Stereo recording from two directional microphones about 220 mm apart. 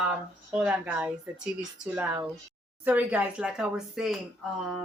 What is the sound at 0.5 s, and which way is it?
Speech, 5° right (ahead or behind).